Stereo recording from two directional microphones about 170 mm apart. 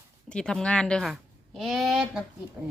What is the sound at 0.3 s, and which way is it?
Speech, 5° left (ahead or behind).